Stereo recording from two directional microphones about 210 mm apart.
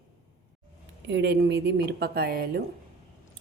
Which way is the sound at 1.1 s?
55° right (ahead or behind).